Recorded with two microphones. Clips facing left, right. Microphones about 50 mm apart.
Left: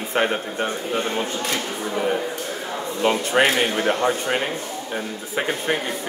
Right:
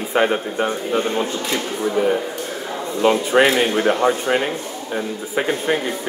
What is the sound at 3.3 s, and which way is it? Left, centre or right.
Speech, centre.